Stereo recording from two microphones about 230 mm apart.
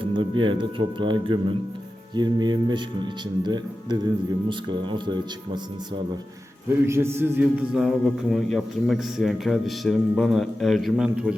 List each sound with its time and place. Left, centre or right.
0.0 s speech: right
6.8 s a man's voice: centre